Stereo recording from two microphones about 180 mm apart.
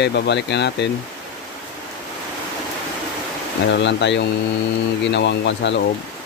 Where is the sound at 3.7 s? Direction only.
75° left (ahead or behind).